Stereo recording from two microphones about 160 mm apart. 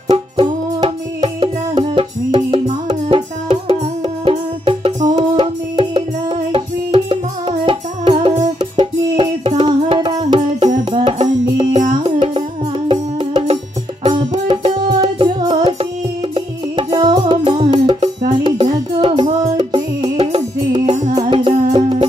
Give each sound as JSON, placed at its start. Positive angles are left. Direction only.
{"t": 0.1, "sound": "music", "side_deg": -35}